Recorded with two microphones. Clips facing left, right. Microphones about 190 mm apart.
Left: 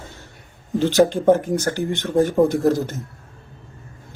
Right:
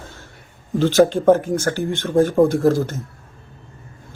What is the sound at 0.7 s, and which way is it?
A man's voice, 15° left (ahead or behind).